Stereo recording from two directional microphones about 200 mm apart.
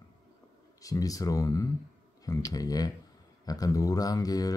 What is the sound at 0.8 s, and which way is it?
Speech, 15° left (ahead or behind).